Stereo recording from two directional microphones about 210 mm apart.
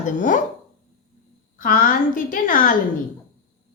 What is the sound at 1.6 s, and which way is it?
A woman's voice, 40° left (ahead or behind).